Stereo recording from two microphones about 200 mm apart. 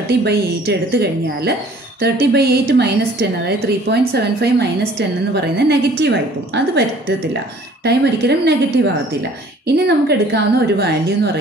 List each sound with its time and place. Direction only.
0.2 s a woman's voice: 55° right (ahead or behind)
7.8 s a woman's voice: 55° right (ahead or behind)